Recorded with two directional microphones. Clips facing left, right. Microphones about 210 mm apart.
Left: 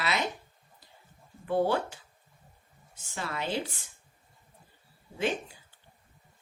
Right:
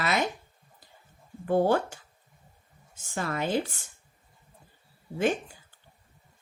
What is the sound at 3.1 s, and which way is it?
Speech, 45° right (ahead or behind).